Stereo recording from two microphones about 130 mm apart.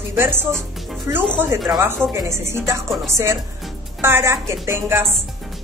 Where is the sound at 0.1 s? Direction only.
15° right (ahead or behind).